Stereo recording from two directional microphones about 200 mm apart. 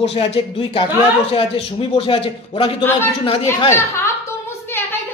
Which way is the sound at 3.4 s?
15° left (ahead or behind).